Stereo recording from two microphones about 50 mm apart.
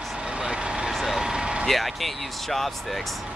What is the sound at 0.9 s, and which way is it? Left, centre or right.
Vehicle, centre.